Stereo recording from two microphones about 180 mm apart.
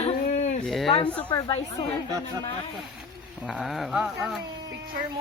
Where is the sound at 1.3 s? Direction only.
25° left (ahead or behind).